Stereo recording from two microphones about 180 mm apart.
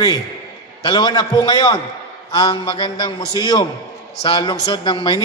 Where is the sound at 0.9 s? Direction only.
25° left (ahead or behind).